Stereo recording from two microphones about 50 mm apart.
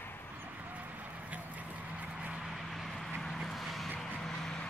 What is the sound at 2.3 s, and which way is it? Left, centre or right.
Vehicle, centre.